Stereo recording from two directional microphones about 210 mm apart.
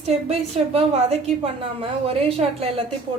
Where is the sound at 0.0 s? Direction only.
30° right (ahead or behind).